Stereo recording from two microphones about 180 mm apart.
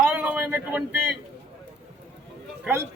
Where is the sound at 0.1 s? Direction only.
10° right (ahead or behind).